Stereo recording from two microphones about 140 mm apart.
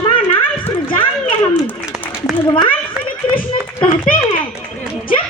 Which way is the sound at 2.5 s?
30° left (ahead or behind).